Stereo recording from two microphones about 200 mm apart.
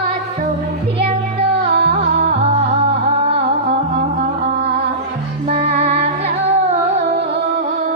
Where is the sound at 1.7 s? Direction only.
50° right (ahead or behind).